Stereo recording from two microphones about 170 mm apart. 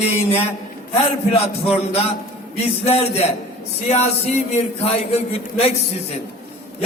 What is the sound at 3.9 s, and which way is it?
A man's voice, 40° left (ahead or behind).